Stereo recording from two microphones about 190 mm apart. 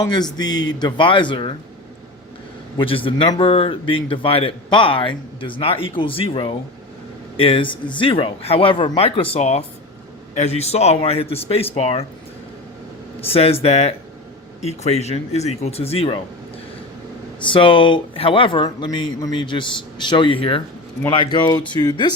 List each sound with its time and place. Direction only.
0.0 s speech: 20° left (ahead or behind)
2.7 s speech: 30° left (ahead or behind)
13.2 s speech: 30° left (ahead or behind)
17.4 s speech: 25° left (ahead or behind)